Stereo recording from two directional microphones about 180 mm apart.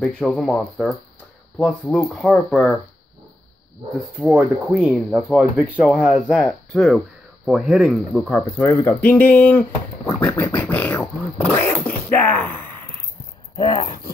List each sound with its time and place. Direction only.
0.0 s speech: centre (ahead or behind)
4.2 s speech: 5° right (ahead or behind); by 9.6 s 10° left (ahead or behind)
10.2 s a sound: 10° left (ahead or behind)
13.6 s speech: 35° left (ahead or behind)